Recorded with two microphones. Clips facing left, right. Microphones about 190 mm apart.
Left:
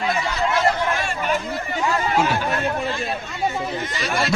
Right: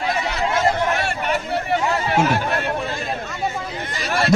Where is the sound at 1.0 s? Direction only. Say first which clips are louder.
Right 1 dB; 65° right (ahead or behind).